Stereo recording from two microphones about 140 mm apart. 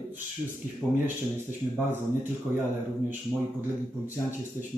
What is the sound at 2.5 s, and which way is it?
Speech, 10° right (ahead or behind).